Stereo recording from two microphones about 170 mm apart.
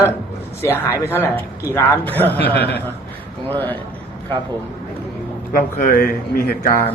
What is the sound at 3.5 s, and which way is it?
Speech, 10° left (ahead or behind).